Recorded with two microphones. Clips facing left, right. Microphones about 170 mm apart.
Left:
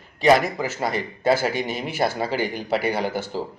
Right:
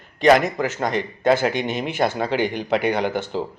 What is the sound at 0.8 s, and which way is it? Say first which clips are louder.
Speech: right 2 dB; 5° left (ahead or behind).